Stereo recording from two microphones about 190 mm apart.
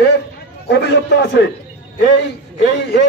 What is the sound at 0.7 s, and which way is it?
A man's voice, 60° left (ahead or behind).